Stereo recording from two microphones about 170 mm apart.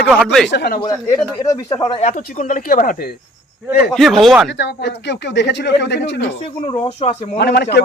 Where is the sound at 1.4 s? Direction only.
20° left (ahead or behind).